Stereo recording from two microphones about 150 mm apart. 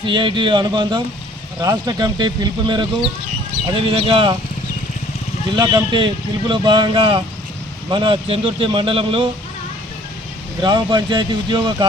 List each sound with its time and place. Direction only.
0.0 s speech: 35° right (ahead or behind)
5.5 s speech: 30° right (ahead or behind)
10.6 s speech: 30° right (ahead or behind)